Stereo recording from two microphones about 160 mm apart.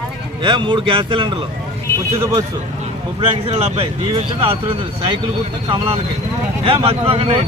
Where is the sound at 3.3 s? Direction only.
40° right (ahead or behind).